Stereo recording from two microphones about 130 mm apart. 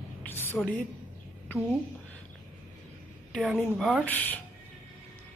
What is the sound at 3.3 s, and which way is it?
Speech, centre (ahead or behind).